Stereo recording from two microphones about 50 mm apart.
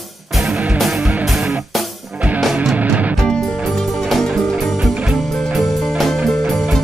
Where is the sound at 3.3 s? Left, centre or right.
Centre.